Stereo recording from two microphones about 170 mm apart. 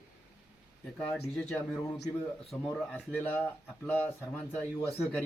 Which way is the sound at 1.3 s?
5° left (ahead or behind).